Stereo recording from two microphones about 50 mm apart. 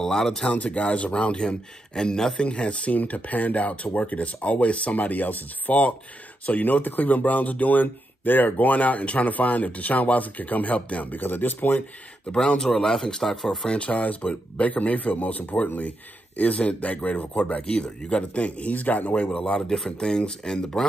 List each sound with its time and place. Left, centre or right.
0.0 s speech: centre
0.5 s speech: left
12.3 s speech: centre
13.7 s speech: left
19.2 s speech: centre